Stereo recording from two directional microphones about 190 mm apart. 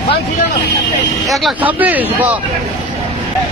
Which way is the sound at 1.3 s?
5° right (ahead or behind).